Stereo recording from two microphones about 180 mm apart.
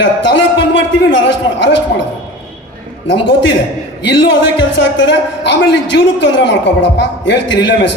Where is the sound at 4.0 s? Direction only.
85° left.